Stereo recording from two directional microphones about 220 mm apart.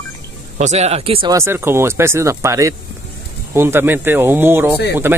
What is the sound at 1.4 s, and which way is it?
Speech, 10° right (ahead or behind).